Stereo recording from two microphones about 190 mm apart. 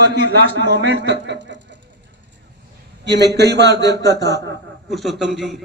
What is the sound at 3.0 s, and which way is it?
Speech, 60° right (ahead or behind).